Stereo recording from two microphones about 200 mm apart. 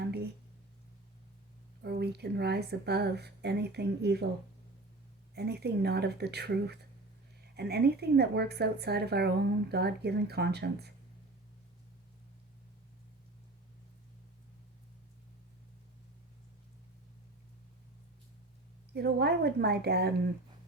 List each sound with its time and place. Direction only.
0.0 s a sound: 55° right (ahead or behind)
1.8 s a woman's voice: 55° right (ahead or behind)
5.3 s a woman's voice: 55° right (ahead or behind)
18.9 s speech: 55° right (ahead or behind)